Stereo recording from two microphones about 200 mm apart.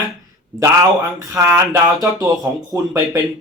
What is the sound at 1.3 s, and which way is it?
Speech, 15° right (ahead or behind).